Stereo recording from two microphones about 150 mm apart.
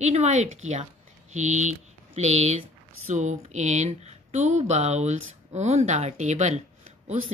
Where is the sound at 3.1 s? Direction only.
55° right (ahead or behind).